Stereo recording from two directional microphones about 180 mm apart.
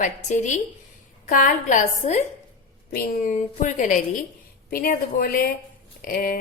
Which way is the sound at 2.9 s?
55° left (ahead or behind).